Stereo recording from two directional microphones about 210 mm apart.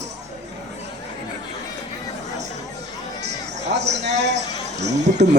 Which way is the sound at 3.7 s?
55° right (ahead or behind).